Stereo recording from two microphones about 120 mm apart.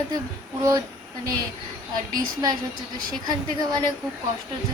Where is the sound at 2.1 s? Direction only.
35° right (ahead or behind).